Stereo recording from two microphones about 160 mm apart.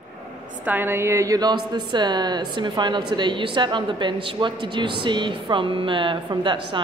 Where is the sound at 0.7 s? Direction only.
15° right (ahead or behind).